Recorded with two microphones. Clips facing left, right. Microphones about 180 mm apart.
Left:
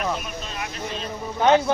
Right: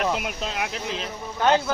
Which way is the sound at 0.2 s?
85° right.